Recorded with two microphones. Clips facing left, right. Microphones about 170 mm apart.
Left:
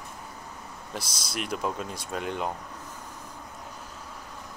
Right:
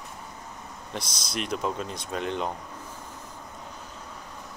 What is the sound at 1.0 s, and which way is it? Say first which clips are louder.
Speech: right 2 dB; 5° left (ahead or behind).